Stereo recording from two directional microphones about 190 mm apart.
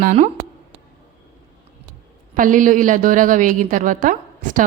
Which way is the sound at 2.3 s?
45° right (ahead or behind).